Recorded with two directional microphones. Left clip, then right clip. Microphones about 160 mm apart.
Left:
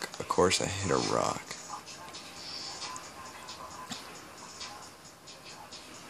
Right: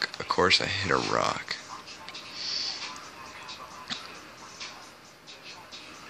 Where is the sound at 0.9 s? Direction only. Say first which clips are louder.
Right 2 dB; 5° right (ahead or behind).